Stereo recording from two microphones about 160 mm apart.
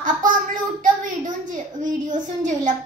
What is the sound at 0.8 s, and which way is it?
A woman's voice, 55° right (ahead or behind).